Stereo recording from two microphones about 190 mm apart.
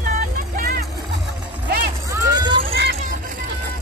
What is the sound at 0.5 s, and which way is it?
Music, 50° right (ahead or behind).